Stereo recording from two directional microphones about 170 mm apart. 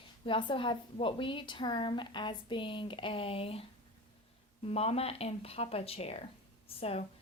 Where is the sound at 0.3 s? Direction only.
30° left (ahead or behind).